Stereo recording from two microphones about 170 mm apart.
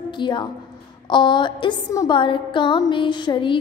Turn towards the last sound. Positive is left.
turn(degrees=30)  # may be behind; listen again after turning